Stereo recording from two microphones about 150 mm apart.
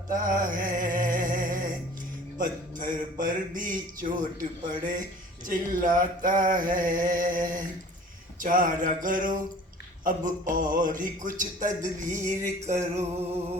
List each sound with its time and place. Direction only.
0.1 s music: 60° right (ahead or behind)
2.4 s a sound: 60° right (ahead or behind)
12.6 s music: 50° right (ahead or behind)